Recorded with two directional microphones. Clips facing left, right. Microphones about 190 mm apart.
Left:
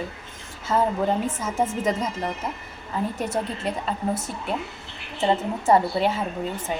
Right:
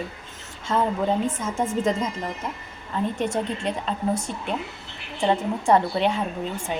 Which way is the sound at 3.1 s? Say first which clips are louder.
Right 2 dB; 5° left (ahead or behind).